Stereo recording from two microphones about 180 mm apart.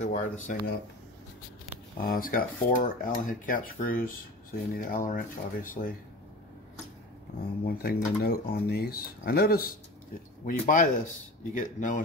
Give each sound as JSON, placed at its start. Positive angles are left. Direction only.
{"t": 0.0, "sound": "speech", "side_deg": 45}
{"t": 2.0, "sound": "speech", "side_deg": 55}
{"t": 7.6, "sound": "speech", "side_deg": 60}
{"t": 10.4, "sound": "speech", "side_deg": 45}